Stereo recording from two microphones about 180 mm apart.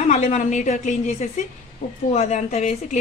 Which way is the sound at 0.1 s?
40° left (ahead or behind).